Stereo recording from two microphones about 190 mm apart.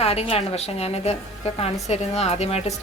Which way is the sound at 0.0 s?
30° left (ahead or behind).